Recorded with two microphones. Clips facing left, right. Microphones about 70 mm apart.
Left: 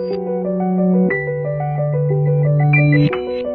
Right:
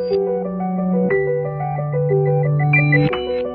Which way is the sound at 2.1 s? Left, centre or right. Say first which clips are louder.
Right 2 dB; right.